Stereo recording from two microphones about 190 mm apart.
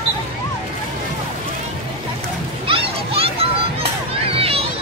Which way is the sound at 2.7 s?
30° right (ahead or behind).